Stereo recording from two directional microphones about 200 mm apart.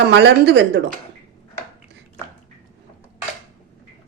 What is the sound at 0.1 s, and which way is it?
Speech, 60° right (ahead or behind).